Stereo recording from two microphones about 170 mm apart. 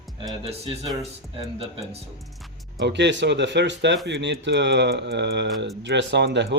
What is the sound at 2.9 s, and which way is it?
Speech, 90° right.